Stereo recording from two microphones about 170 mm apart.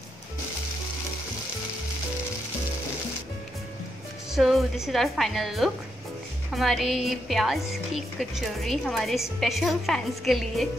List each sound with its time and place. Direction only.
4.3 s a woman's voice: centre (ahead or behind)